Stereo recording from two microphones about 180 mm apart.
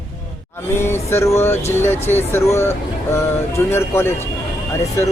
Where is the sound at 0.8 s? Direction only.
15° left (ahead or behind).